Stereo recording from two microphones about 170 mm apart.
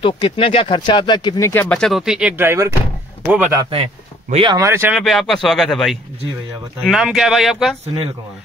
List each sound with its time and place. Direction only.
0.0 s speech: 30° left (ahead or behind)
1.5 s speech: 10° left (ahead or behind); by 3.5 s 10° right (ahead or behind)
3.7 s speech: 35° right (ahead or behind)
4.5 s speech: 15° right (ahead or behind)
4.9 s speech: centre (ahead or behind)